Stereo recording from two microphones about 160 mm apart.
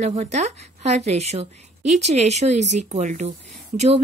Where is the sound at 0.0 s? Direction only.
45° right (ahead or behind).